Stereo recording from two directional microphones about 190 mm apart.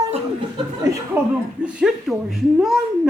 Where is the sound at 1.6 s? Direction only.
5° right (ahead or behind).